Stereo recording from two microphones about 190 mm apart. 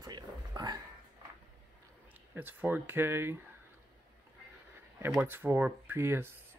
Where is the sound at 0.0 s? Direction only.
20° right (ahead or behind).